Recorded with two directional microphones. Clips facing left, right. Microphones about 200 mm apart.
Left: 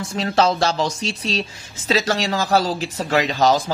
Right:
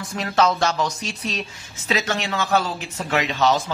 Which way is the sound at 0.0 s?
30° left (ahead or behind).